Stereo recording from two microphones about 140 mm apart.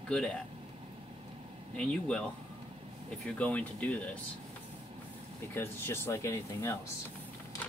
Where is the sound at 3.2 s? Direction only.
10° left (ahead or behind).